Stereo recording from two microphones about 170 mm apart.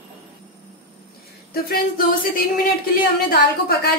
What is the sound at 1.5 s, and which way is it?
A woman's voice, 65° left (ahead or behind).